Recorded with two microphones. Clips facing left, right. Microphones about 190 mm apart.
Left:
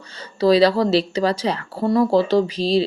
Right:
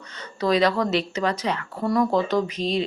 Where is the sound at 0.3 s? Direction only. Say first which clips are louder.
Left 6 dB; 30° left (ahead or behind).